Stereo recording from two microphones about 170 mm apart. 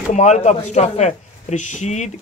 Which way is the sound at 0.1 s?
45° left (ahead or behind).